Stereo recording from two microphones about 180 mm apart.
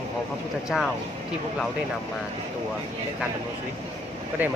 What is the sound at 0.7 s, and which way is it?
Speech, 5° left (ahead or behind).